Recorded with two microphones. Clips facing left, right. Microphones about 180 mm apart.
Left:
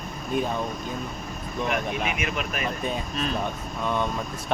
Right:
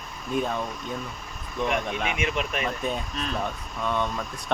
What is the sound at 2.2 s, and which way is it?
Speech, 25° right (ahead or behind).